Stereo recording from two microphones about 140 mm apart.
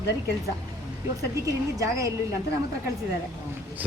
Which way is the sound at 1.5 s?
25° right (ahead or behind).